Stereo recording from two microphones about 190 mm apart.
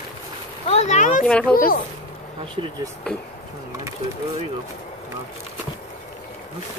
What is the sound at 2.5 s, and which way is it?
Speech, 25° right (ahead or behind).